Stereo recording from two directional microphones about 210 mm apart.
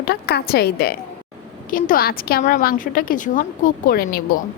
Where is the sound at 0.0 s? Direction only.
50° left (ahead or behind).